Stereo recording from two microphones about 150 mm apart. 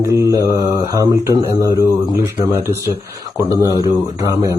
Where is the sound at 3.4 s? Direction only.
20° right (ahead or behind).